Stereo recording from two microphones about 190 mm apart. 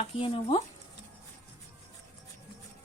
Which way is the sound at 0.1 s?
30° left (ahead or behind).